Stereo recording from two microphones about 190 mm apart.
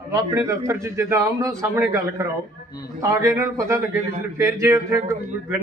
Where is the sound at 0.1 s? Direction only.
15° right (ahead or behind).